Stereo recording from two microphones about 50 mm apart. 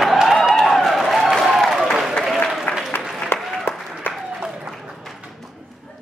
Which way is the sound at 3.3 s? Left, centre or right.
Left.